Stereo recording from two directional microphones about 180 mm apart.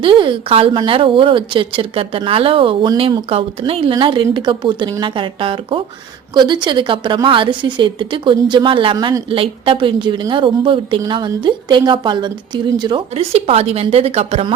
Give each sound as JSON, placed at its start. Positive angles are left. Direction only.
{"t": 0.0, "sound": "a woman's voice", "side_deg": -30}